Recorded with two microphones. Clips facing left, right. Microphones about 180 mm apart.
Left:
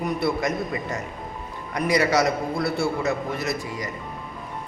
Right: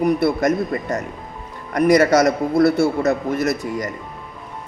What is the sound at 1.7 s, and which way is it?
A man's voice, 50° right (ahead or behind).